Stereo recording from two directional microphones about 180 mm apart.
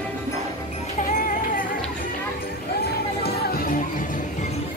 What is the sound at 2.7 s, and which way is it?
Music, 60° left (ahead or behind).